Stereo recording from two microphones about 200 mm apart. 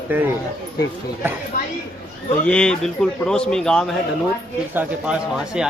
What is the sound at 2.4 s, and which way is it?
A man's voice, 5° left (ahead or behind).